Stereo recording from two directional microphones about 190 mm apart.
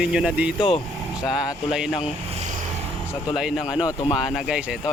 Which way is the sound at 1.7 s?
5° right (ahead or behind).